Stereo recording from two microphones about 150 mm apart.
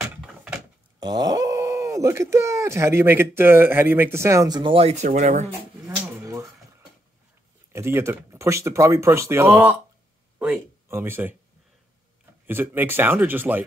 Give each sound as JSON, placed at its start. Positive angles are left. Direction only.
{"t": 0.9, "sound": "speech", "side_deg": -25}
{"t": 5.9, "sound": "a sound", "side_deg": -20}
{"t": 7.7, "sound": "speech", "side_deg": -15}
{"t": 12.4, "sound": "speech", "side_deg": -15}